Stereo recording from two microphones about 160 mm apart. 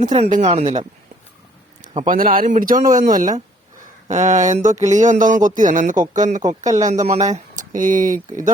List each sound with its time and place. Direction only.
0.3 s speech: 50° right (ahead or behind)
2.0 s speech: 60° right (ahead or behind)